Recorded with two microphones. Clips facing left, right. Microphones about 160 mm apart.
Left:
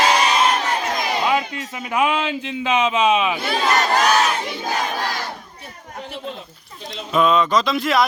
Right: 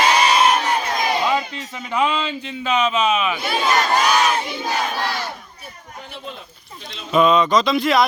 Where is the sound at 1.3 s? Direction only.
10° left (ahead or behind).